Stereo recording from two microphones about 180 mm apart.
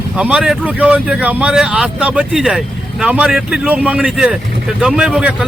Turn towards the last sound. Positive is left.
turn(degrees=-5)  # may be behind; listen again after turning